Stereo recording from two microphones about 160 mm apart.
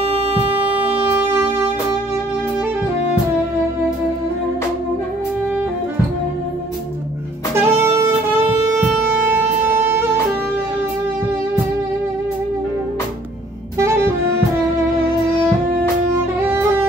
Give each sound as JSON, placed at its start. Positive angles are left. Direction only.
{"t": 0.7, "sound": "music", "side_deg": -10}
{"t": 7.6, "sound": "music", "side_deg": -15}
{"t": 13.7, "sound": "saxophone", "side_deg": -15}